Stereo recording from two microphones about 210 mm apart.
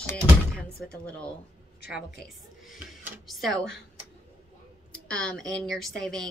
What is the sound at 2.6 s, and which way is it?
A woman's voice, centre (ahead or behind).